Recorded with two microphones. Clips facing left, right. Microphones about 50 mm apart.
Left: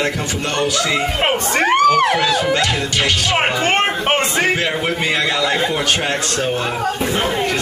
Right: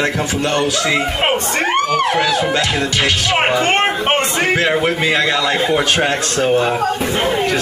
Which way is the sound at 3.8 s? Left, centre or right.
Centre.